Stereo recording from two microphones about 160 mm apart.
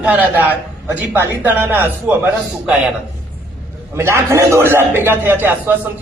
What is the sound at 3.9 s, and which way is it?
A man's voice, 15° right (ahead or behind).